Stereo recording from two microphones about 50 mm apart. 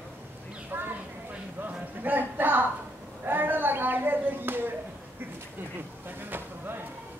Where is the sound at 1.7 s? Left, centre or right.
Right.